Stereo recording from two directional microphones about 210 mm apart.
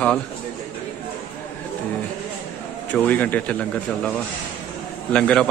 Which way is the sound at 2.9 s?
10° left (ahead or behind).